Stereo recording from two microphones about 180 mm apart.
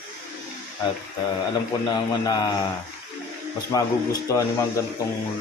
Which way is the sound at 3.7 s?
20° left (ahead or behind).